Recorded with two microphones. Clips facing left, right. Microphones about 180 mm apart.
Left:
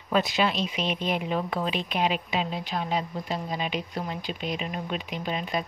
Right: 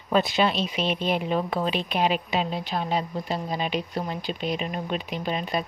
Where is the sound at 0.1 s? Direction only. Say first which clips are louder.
Right 2 dB; 30° right (ahead or behind).